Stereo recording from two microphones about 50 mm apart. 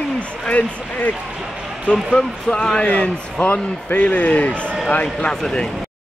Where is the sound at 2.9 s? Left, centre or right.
Left.